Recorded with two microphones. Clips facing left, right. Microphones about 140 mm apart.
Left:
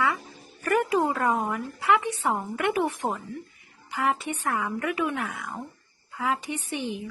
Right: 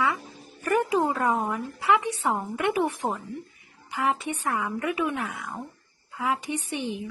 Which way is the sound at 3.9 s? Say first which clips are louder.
Even; 15° right (ahead or behind).